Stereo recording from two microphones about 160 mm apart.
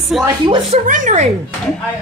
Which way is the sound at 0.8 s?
55° right (ahead or behind).